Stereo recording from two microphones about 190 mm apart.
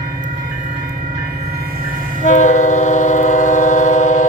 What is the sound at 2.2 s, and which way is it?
Train, 40° left (ahead or behind).